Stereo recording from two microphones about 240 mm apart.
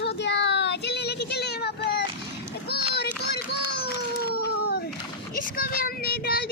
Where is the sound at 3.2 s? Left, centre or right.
Left.